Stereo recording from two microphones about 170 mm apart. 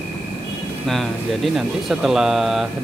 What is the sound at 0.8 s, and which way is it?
Speech, centre (ahead or behind).